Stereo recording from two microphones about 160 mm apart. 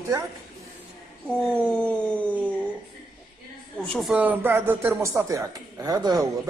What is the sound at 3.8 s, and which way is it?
Speech, 5° left (ahead or behind).